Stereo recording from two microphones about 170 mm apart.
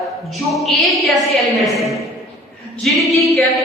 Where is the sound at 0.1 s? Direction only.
Centre (ahead or behind).